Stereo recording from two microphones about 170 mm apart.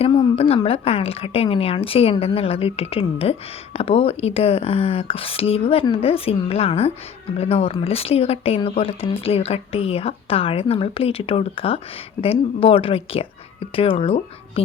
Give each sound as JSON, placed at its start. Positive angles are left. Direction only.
{"t": 0.0, "sound": "a woman's voice", "side_deg": 35}